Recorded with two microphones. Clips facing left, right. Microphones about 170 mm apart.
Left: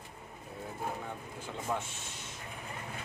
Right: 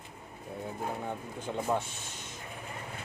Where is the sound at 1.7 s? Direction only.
35° right (ahead or behind).